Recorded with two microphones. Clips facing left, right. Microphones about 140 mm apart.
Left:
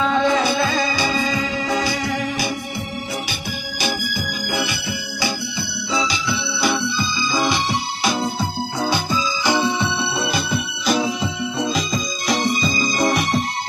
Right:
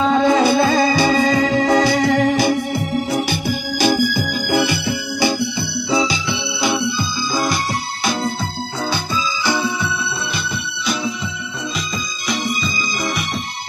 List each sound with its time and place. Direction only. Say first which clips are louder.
0.0 s music: right 4 dB; 35° right (ahead or behind); by 2.5 s 65° right (ahead or behind)
4.6 s music: right 7 dB; 60° right (ahead or behind)
6.6 s music: right 2 dB; 10° right (ahead or behind)
8.0 s music: right 1 dB; 5° left (ahead or behind)
8.9 s music: left 1 dB; 15° left (ahead or behind)
12.3 s music: left 2 dB; 35° left (ahead or behind)